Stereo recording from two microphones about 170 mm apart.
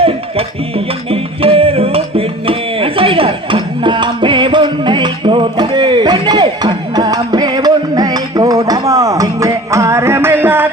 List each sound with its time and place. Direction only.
1.1 s music: 35° right (ahead or behind); by 10.7 s 15° right (ahead or behind)